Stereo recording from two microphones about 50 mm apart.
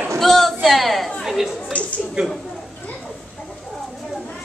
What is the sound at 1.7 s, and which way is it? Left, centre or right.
Speech, left.